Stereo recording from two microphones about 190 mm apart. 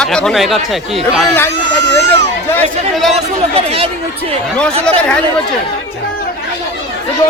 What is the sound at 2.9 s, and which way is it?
Speech, centre (ahead or behind).